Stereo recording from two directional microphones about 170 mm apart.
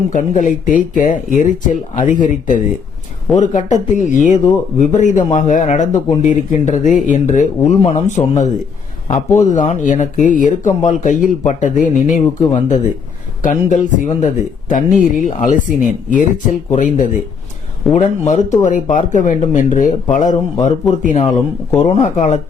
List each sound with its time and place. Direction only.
0.1 s speech: 50° left (ahead or behind)